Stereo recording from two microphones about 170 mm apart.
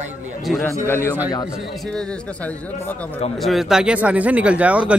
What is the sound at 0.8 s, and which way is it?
Speech, 15° left (ahead or behind).